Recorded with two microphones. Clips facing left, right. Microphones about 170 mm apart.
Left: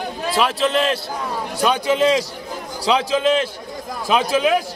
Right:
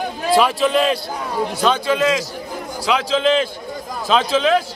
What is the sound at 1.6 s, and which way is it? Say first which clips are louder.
Speech: left 1 dB; 15° left (ahead or behind).